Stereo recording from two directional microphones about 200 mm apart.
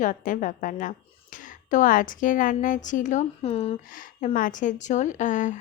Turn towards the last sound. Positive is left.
turn(degrees=40)  # may be behind; listen again after turning